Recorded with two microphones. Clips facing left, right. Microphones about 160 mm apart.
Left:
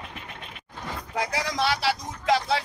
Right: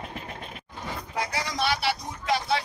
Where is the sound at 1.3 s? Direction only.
90° left.